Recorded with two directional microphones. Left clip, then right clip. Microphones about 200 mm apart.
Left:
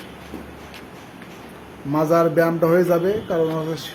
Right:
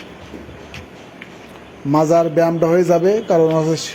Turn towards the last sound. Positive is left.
turn(degrees=-30)  # may be behind; listen again after turning